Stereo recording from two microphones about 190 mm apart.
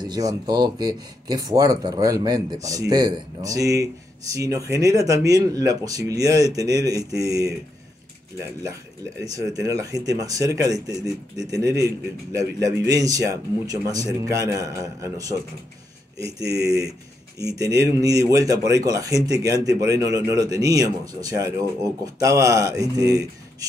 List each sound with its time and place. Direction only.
0.0 s speech: 20° right (ahead or behind)
9.2 s speech: 20° right (ahead or behind)
16.3 s speech: 20° right (ahead or behind)